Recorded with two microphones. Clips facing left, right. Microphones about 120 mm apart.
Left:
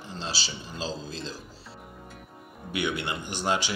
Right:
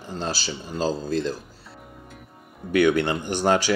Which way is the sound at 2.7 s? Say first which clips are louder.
Right 11 dB; 50° right (ahead or behind).